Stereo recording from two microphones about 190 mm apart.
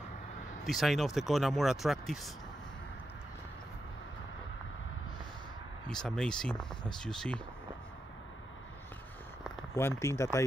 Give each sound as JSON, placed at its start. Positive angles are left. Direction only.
{"t": 0.7, "sound": "speech", "side_deg": 0}
{"t": 5.9, "sound": "speech", "side_deg": 5}
{"t": 9.8, "sound": "speech", "side_deg": 15}